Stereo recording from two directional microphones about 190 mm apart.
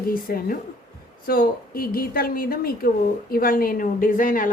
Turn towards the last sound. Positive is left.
turn(degrees=45)  # may be behind; listen again after turning